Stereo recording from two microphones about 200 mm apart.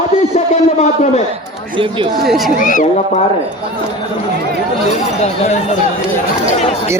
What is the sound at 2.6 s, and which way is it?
Speech, 40° left (ahead or behind).